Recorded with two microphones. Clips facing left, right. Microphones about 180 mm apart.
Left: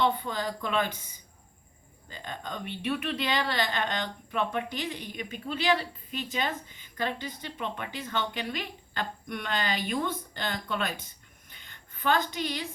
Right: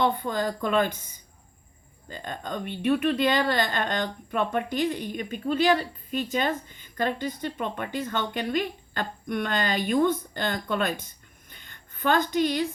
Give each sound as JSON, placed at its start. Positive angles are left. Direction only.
{"t": 0.0, "sound": "speech", "side_deg": -50}
{"t": 2.0, "sound": "speech", "side_deg": -50}
{"t": 11.4, "sound": "a sound", "side_deg": -50}